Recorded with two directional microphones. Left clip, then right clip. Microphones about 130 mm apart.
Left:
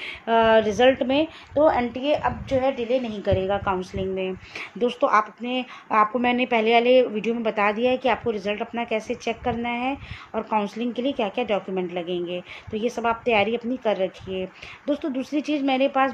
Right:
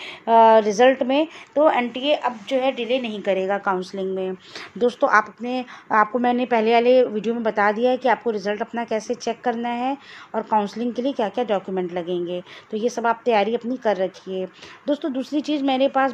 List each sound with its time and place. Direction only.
0.0 s speech: 30° right (ahead or behind)